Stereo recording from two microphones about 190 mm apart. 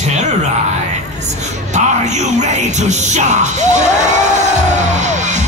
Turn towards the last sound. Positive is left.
turn(degrees=-40)  # may be behind; listen again after turning